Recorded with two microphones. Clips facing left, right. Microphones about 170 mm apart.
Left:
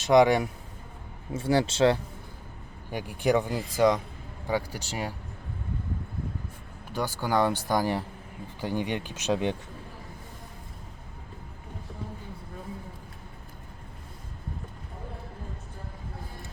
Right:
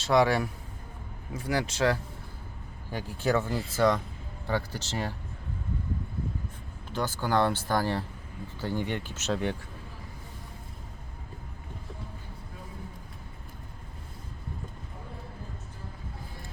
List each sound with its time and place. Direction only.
0.0 s speech: 20° left (ahead or behind)
2.9 s speech: 15° left (ahead or behind)
6.9 s speech: 10° left (ahead or behind)